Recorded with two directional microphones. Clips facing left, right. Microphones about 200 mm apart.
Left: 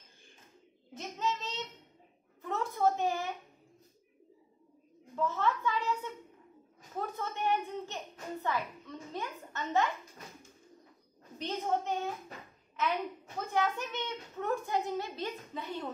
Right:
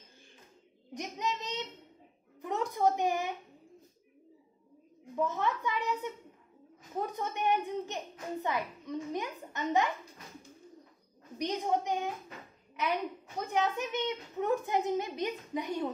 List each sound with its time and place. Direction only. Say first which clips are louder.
0.9 s child singing: even; 15° right (ahead or behind)
2.4 s a woman's voice: right 1 dB; 15° right (ahead or behind)
5.1 s a child's voice: even; 15° right (ahead or behind)
11.3 s a child's voice: right 2 dB; 15° right (ahead or behind)
13.5 s a child's voice: right 1 dB; 15° right (ahead or behind)